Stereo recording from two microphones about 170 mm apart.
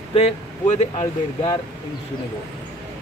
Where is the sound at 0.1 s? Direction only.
35° left (ahead or behind).